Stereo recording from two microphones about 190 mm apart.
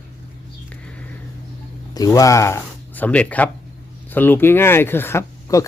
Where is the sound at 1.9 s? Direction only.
20° left (ahead or behind).